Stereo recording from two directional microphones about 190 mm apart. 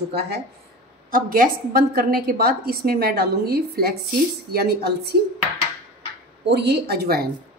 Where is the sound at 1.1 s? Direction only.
50° right (ahead or behind).